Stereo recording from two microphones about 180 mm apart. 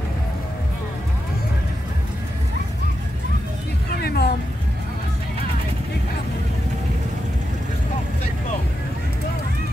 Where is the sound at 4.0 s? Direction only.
60° left (ahead or behind).